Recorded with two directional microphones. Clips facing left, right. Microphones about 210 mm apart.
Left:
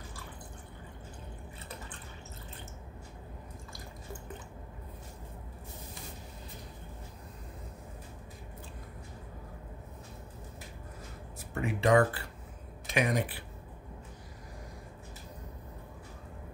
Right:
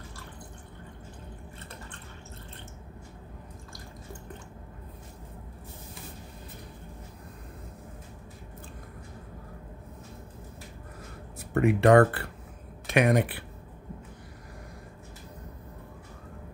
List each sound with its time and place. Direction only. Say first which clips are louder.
11.5 s speech: right 7 dB; 60° right (ahead or behind)